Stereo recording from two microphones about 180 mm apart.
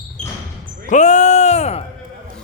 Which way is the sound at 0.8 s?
40° left (ahead or behind).